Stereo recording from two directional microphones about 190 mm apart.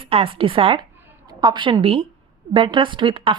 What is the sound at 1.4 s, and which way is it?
A woman's voice, 25° right (ahead or behind).